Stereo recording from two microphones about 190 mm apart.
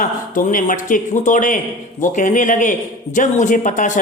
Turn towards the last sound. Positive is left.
turn(degrees=45)  # may be behind; listen again after turning